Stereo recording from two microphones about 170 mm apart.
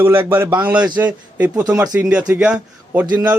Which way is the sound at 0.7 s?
25° right (ahead or behind).